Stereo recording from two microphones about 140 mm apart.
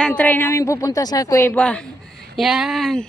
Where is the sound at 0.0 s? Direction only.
10° left (ahead or behind).